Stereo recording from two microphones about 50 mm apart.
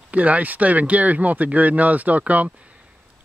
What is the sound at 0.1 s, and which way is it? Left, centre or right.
Speech, right.